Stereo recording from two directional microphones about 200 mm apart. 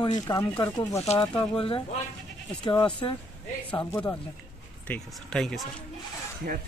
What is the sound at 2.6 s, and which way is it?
Speech, 25° left (ahead or behind).